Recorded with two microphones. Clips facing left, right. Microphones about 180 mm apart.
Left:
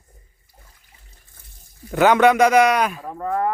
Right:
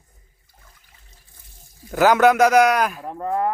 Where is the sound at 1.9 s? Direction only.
Centre (ahead or behind).